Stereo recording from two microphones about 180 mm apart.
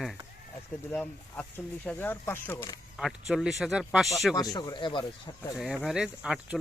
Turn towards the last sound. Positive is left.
turn(degrees=-5)  # may be behind; listen again after turning